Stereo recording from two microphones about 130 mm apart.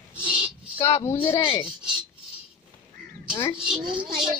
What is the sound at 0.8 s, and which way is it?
Speech, 20° left (ahead or behind).